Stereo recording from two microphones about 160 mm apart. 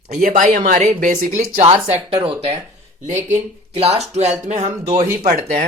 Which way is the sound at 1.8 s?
40° right (ahead or behind).